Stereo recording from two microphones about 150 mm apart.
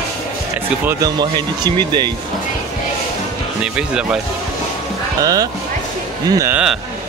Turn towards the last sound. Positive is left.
turn(degrees=-5)  # may be behind; listen again after turning